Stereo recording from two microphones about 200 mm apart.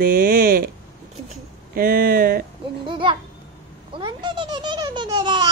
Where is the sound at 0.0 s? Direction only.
45° right (ahead or behind).